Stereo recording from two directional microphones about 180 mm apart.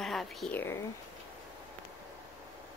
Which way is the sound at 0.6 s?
15° left (ahead or behind).